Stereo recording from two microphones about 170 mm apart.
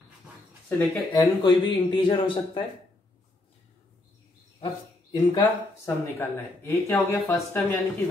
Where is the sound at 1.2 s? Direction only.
25° left (ahead or behind).